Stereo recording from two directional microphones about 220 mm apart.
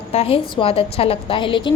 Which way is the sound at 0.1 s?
25° left (ahead or behind).